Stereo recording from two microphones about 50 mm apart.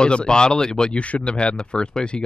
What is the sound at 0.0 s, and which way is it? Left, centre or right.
Speech, centre.